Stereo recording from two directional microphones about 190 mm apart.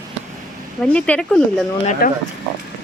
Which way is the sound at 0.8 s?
5° left (ahead or behind).